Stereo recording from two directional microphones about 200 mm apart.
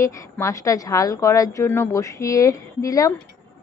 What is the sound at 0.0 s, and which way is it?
A woman's voice, 15° left (ahead or behind).